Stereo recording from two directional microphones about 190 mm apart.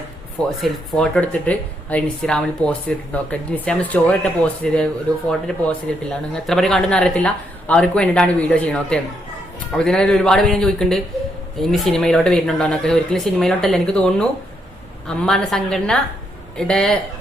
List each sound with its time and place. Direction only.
0.6 s speech: 5° left (ahead or behind)